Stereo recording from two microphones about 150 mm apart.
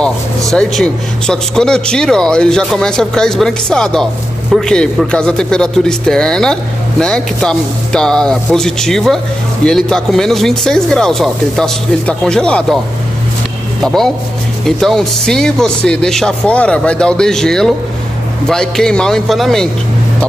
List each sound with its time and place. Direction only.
0.5 s speech: 5° left (ahead or behind)
13.8 s speech: centre (ahead or behind)